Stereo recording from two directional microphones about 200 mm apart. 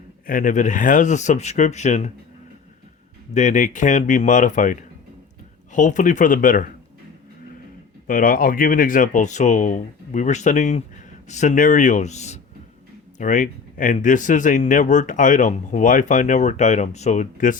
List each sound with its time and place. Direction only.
0.3 s speech: 40° left (ahead or behind)
3.3 s speech: 40° left (ahead or behind)
8.0 s speech: 45° left (ahead or behind)